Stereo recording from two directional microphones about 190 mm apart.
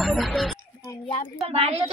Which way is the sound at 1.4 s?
30° right (ahead or behind).